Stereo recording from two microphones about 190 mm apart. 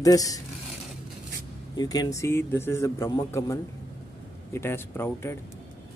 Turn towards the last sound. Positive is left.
turn(degrees=10)  # may be behind; listen again after turning